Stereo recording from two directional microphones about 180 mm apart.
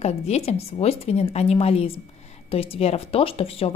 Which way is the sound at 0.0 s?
35° left (ahead or behind).